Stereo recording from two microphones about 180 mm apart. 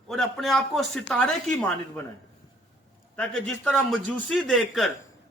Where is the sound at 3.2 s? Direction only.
5° left (ahead or behind).